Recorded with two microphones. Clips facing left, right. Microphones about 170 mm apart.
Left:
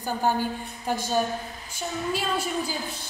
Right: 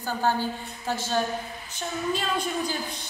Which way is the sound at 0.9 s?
15° left (ahead or behind).